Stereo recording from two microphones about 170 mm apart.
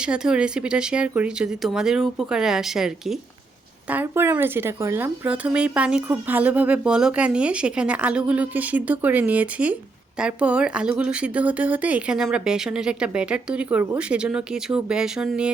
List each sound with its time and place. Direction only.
0.0 s speech: 5° right (ahead or behind)